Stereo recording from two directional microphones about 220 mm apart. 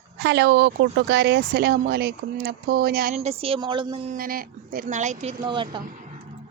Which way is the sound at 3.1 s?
30° right (ahead or behind).